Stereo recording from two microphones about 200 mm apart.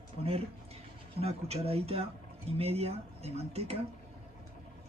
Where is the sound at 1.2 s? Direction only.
30° right (ahead or behind).